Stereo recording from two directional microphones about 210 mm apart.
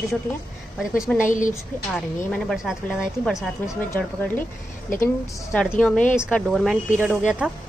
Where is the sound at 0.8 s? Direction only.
5° right (ahead or behind).